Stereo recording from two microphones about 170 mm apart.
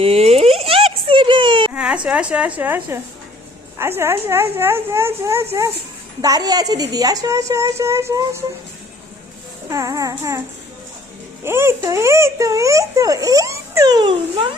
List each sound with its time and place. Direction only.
0.0 s a sound: 35° right (ahead or behind)
1.7 s baby cry: 5° right (ahead or behind)
2.0 s speech: 5° right (ahead or behind)
9.6 s speech: 20° right (ahead or behind)
11.4 s speech: 15° right (ahead or behind)